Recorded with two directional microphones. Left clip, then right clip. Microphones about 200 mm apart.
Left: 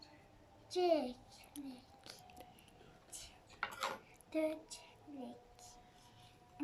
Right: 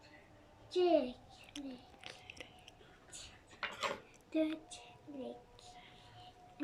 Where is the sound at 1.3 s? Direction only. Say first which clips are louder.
Right 3 dB; 55° left (ahead or behind).